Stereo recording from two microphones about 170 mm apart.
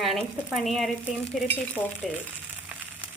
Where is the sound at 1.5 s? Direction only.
10° right (ahead or behind).